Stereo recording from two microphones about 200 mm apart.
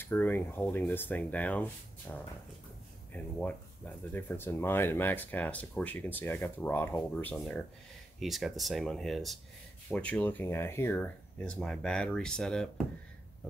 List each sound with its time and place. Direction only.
0.0 s speech: 10° left (ahead or behind)